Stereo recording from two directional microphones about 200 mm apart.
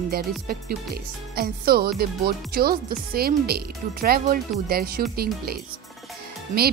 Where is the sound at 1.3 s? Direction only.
50° right (ahead or behind).